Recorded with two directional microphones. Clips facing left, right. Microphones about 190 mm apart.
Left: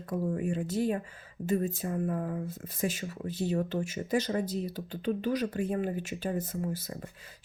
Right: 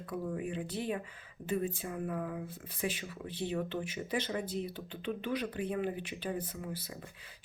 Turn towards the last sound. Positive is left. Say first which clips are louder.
# left 7 dB
turn(degrees=45)  # may be behind; listen again after turning